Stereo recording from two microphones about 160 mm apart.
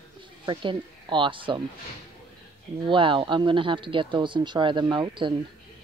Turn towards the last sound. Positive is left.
turn(degrees=-30)  # may be behind; listen again after turning